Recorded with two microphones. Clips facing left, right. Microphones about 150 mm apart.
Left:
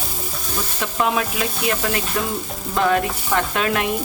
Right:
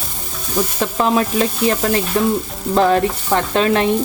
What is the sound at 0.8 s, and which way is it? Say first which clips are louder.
Stir: right 4 dB; 35° right (ahead or behind).